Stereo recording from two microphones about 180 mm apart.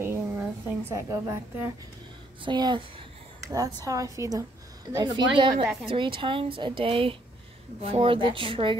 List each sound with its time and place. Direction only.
0.0 s a woman's voice: 10° right (ahead or behind); by 8.7 s 30° right (ahead or behind)